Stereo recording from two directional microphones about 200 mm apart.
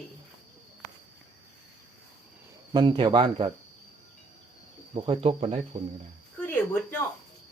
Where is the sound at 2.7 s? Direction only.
20° right (ahead or behind).